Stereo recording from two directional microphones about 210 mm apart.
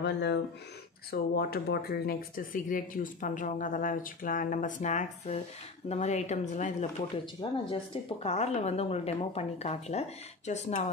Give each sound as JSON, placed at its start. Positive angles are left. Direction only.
{"t": 0.0, "sound": "speech", "side_deg": 55}
{"t": 7.4, "sound": "speech", "side_deg": 20}